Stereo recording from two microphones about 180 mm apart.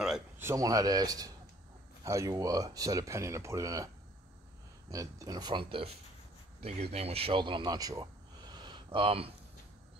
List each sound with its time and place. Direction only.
0.4 s speech: 15° right (ahead or behind)
4.9 s speech: 20° right (ahead or behind)